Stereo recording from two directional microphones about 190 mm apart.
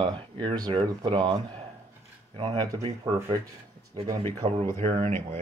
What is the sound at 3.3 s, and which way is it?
Speech, 15° right (ahead or behind).